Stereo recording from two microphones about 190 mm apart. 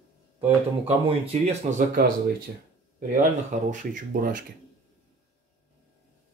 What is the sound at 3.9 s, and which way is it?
Speech, 45° right (ahead or behind).